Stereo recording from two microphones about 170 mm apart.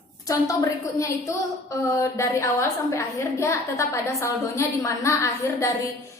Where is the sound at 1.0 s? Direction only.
20° left (ahead or behind).